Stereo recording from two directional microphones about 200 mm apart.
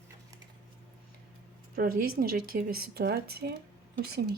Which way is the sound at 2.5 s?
55° right (ahead or behind).